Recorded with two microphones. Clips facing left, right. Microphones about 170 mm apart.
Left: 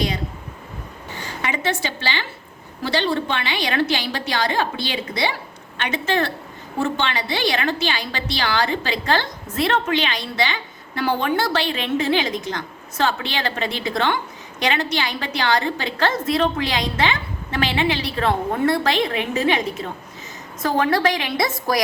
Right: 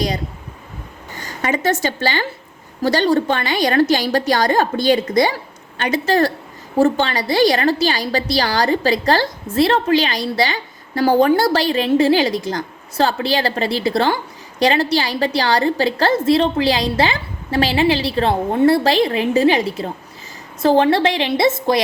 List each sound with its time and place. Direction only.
1.2 s a woman's voice: 45° right (ahead or behind); by 21.8 s 25° right (ahead or behind)